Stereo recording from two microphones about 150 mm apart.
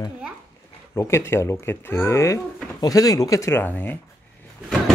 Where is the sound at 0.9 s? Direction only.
15° left (ahead or behind).